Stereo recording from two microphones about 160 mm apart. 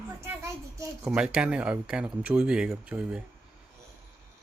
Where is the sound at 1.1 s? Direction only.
5° right (ahead or behind).